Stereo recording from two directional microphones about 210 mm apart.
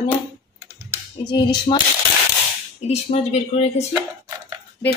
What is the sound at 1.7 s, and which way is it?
Speech, 25° left (ahead or behind).